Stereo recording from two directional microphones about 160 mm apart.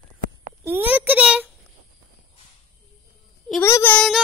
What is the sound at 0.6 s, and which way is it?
Speech, 10° right (ahead or behind).